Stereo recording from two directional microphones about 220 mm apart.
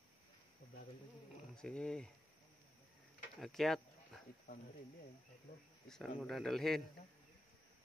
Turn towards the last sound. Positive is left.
turn(degrees=0)  # may be behind; listen again after turning